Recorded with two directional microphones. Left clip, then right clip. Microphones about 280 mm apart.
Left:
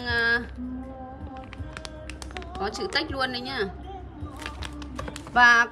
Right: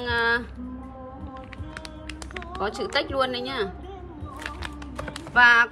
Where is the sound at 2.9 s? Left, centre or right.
Centre.